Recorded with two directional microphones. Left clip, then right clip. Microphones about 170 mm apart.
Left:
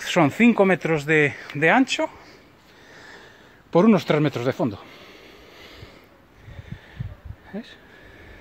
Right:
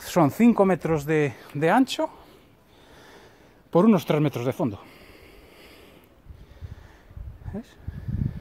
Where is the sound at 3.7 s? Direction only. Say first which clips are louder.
Left 2 dB; 10° right (ahead or behind).